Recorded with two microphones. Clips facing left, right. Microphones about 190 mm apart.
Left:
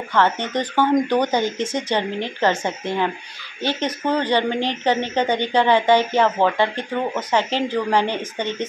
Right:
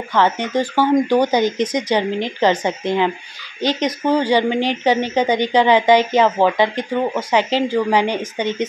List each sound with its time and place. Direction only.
0.1 s a woman's voice: 10° right (ahead or behind)